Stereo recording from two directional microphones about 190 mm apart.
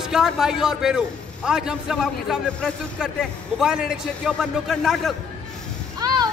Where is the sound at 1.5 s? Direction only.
5° right (ahead or behind).